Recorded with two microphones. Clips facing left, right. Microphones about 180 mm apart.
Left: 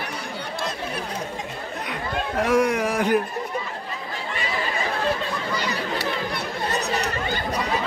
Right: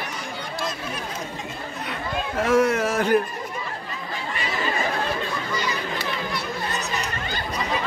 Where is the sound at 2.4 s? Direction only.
15° left (ahead or behind).